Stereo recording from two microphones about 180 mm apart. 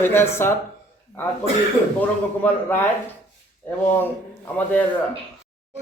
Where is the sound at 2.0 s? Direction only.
10° left (ahead or behind).